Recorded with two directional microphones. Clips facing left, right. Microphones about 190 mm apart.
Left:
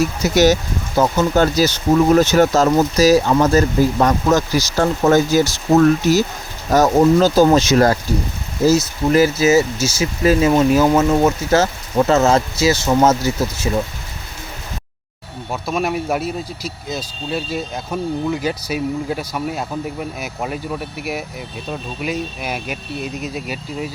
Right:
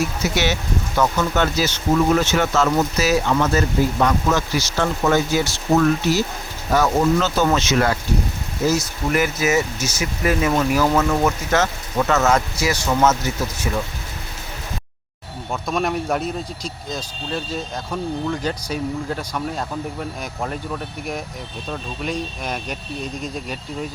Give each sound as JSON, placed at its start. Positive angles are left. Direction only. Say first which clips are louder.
{"t": 0.2, "sound": "speech", "louder": "left 8 dB", "side_deg": 40}
{"t": 1.5, "sound": "speech", "louder": "left 4 dB", "side_deg": 35}
{"t": 15.6, "sound": "speech", "louder": "left 2 dB", "side_deg": 5}